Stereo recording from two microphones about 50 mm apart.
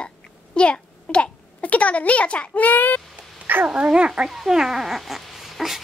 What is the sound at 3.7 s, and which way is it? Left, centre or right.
Speech, right.